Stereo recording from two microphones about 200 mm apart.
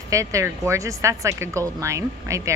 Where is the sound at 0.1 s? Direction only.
15° right (ahead or behind).